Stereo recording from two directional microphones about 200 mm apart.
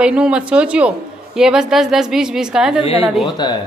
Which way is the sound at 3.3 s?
20° left (ahead or behind).